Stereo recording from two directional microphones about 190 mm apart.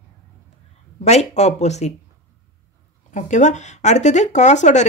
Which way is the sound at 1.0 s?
35° left (ahead or behind).